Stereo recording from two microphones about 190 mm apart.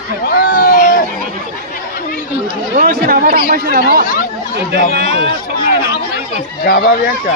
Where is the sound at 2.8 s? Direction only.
50° right (ahead or behind).